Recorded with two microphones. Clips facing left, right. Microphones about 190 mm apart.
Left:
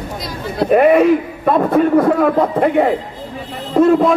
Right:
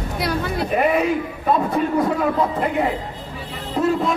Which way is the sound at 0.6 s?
55° left (ahead or behind).